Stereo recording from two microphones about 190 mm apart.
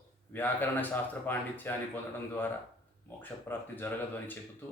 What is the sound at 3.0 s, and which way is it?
Speech, 10° left (ahead or behind).